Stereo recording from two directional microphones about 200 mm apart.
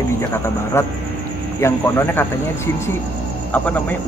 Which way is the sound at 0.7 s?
15° left (ahead or behind).